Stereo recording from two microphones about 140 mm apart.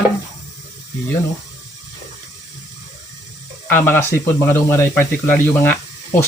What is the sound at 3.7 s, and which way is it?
Speech, 15° left (ahead or behind).